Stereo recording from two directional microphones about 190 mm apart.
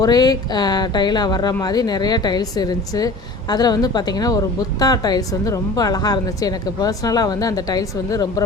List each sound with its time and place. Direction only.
0.0 s a woman's voice: 20° left (ahead or behind)